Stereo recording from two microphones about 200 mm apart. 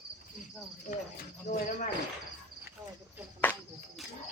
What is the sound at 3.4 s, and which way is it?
Cricket, 5° left (ahead or behind).